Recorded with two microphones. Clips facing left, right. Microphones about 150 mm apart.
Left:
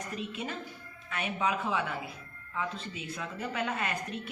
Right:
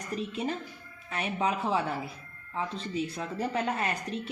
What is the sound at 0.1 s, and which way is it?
A woman's voice, 35° right (ahead or behind).